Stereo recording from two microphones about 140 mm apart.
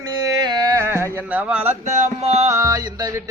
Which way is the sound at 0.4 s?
30° right (ahead or behind).